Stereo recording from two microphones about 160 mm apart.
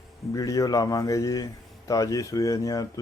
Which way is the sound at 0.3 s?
20° left (ahead or behind).